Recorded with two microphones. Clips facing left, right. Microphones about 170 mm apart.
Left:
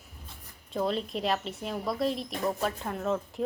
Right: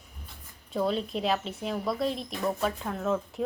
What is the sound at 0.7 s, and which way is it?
A woman's voice, centre (ahead or behind).